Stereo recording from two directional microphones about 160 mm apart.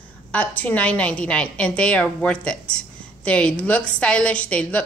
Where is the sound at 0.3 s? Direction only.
10° left (ahead or behind).